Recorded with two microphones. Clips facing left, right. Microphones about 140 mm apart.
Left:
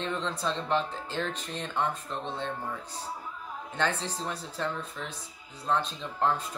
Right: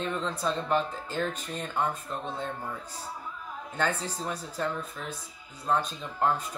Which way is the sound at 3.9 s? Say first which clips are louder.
Even; 30° left (ahead or behind).